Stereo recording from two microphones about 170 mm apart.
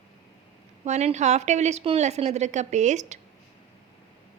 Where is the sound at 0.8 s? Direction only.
40° right (ahead or behind).